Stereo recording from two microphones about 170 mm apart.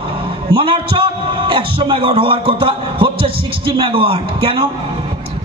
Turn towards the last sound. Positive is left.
turn(degrees=-30)  # may be behind; listen again after turning